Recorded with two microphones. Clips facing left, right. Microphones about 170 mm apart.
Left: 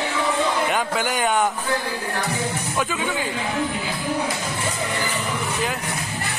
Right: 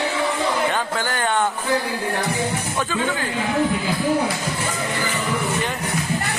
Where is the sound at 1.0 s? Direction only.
10° left (ahead or behind).